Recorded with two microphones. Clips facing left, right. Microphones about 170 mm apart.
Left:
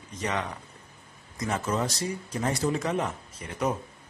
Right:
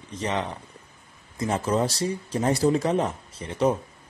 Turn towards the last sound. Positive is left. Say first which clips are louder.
# right 6 dB
turn(degrees=-30)  # may be behind; listen again after turning